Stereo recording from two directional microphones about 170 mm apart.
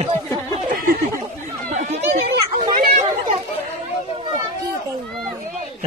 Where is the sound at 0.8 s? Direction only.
55° right (ahead or behind).